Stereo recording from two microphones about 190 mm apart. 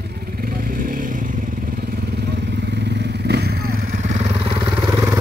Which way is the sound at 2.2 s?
60° right (ahead or behind).